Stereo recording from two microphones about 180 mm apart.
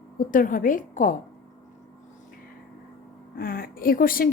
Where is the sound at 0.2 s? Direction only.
50° left (ahead or behind).